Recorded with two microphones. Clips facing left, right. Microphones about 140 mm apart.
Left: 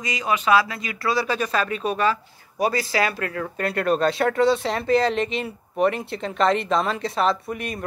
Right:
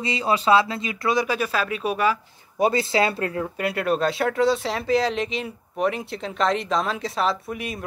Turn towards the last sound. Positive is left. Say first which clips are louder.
# left 2 dB
turn(degrees=0)  # may be behind; listen again after turning